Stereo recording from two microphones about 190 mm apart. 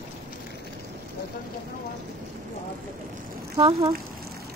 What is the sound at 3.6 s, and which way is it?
Speech, 20° right (ahead or behind).